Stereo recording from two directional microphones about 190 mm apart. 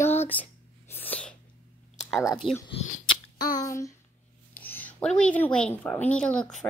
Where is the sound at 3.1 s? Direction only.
20° left (ahead or behind).